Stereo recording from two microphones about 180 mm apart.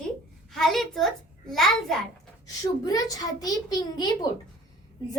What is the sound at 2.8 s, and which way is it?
A child's voice, 20° left (ahead or behind).